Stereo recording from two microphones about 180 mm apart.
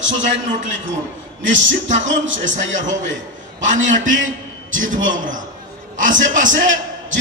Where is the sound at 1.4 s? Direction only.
90° right.